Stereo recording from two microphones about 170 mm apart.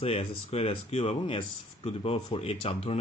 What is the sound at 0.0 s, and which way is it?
Speech, 35° left (ahead or behind).